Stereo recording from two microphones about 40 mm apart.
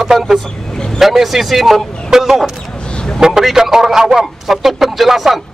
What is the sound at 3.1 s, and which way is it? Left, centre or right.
A man's voice, centre.